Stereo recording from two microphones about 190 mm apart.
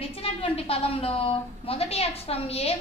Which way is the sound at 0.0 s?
30° left (ahead or behind).